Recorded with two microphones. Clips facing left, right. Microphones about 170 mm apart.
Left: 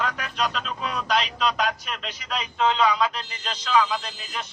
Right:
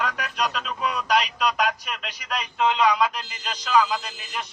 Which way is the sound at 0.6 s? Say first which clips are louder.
Right 2 dB; 5° right (ahead or behind).